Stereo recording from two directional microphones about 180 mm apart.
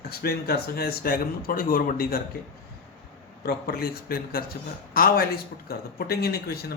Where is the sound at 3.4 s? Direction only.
60° left (ahead or behind).